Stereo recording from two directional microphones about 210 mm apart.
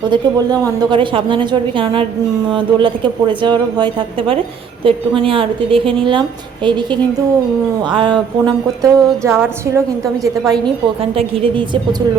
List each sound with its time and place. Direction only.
0.0 s a woman's voice: 20° right (ahead or behind)
7.9 s music: 20° right (ahead or behind)
11.1 s a woman's voice: 25° right (ahead or behind)